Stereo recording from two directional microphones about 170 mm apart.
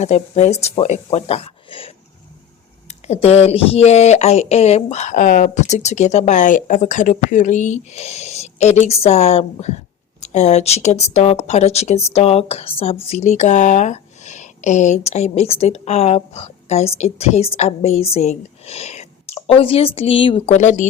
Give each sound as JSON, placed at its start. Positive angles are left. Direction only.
{"t": 0.0, "sound": "speech", "side_deg": 40}
{"t": 3.1, "sound": "speech", "side_deg": 35}